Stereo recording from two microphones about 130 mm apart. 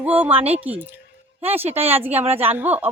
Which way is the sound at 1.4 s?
50° right (ahead or behind).